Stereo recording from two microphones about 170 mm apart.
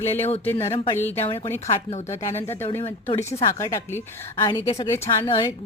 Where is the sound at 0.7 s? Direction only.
30° left (ahead or behind).